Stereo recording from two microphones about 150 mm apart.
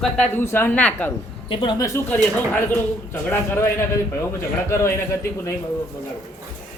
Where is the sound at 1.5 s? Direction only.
35° left (ahead or behind).